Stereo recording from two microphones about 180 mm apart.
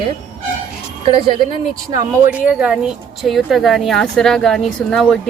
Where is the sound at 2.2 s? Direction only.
5° right (ahead or behind).